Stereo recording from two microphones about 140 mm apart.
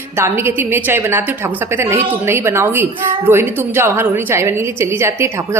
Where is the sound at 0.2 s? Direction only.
15° right (ahead or behind).